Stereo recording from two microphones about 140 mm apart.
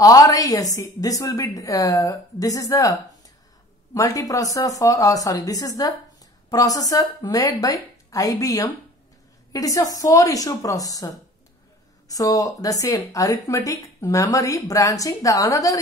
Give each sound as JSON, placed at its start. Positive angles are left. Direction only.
{"t": 0.0, "sound": "speech", "side_deg": 25}